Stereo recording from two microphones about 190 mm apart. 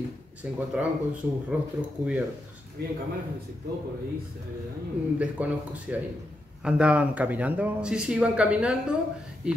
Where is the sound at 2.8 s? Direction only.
60° right (ahead or behind).